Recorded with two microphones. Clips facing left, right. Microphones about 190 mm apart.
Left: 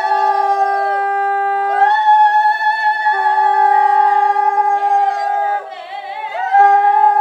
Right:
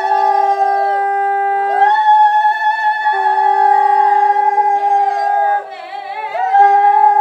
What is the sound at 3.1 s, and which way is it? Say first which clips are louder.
Howl: right 1 dB; 20° right (ahead or behind).